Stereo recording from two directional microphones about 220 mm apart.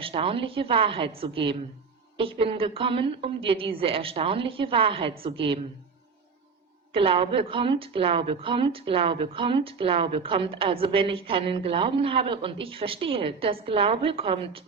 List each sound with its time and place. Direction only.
0.0 s a woman's voice: 25° right (ahead or behind)
6.9 s a woman's voice: 25° right (ahead or behind)